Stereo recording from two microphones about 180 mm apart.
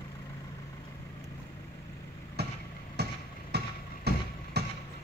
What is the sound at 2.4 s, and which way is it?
Vehicle, 65° right (ahead or behind).